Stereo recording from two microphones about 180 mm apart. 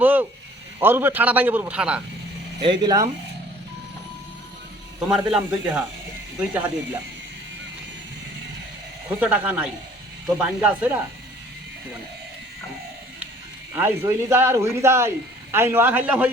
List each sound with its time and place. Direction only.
0.0 s speech: 10° right (ahead or behind)
2.6 s speech: 25° right (ahead or behind)
4.9 s speech: 5° right (ahead or behind)
9.0 s speech: 10° right (ahead or behind)
13.7 s speech: 10° right (ahead or behind)